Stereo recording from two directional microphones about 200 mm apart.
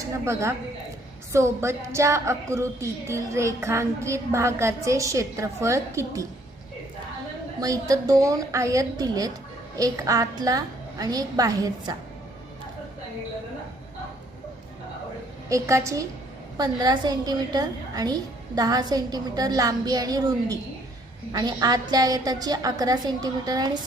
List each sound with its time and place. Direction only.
0.0 s a woman's voice: 15° right (ahead or behind)
7.6 s a woman's voice: 15° right (ahead or behind)
15.4 s a woman's voice: 15° right (ahead or behind)